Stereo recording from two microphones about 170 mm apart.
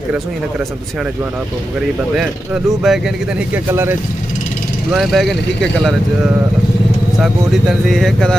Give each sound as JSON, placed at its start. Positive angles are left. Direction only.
{"t": 2.1, "sound": "speech", "side_deg": -5}
{"t": 3.5, "sound": "speech", "side_deg": -15}
{"t": 4.9, "sound": "speech", "side_deg": 0}
{"t": 7.2, "sound": "speech", "side_deg": -5}